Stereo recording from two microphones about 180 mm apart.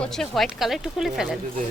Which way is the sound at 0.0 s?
Centre (ahead or behind).